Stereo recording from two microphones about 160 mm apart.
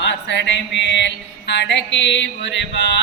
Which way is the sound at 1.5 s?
90° left.